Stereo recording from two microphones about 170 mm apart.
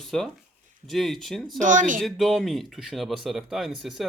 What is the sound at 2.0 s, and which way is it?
Speech, centre (ahead or behind).